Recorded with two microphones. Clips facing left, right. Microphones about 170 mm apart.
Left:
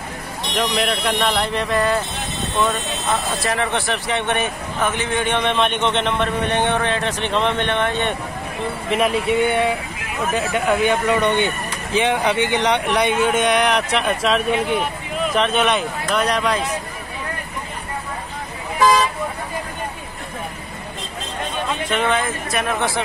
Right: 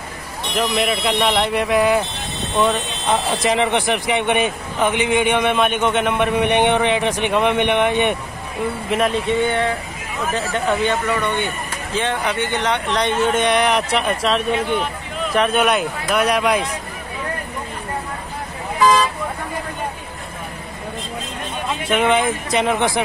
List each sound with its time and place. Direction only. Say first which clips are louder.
0.5 s speech: right 1 dB; 5° right (ahead or behind)
3.1 s speech: right 4 dB; 20° right (ahead or behind)
8.9 s speech: left 1 dB; 5° left (ahead or behind); by 16.6 s 10° right (ahead or behind)
21.8 s speech: right 5 dB; 10° right (ahead or behind)